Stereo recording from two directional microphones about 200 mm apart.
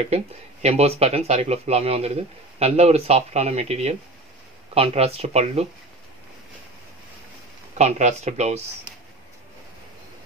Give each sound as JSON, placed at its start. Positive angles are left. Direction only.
{"t": 0.0, "sound": "speech", "side_deg": -30}
{"t": 7.7, "sound": "speech", "side_deg": -35}